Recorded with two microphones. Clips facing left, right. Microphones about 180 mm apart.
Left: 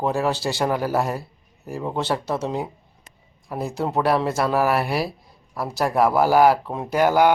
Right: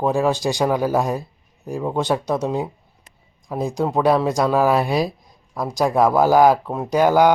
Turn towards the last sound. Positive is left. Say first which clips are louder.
# right 2 dB
turn(degrees=-15)  # may be behind; listen again after turning